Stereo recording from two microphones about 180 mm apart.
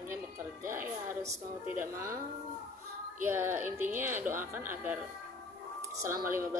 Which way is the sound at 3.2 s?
10° right (ahead or behind).